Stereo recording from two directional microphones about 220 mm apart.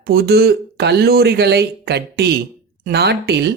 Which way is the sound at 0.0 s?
45° right (ahead or behind).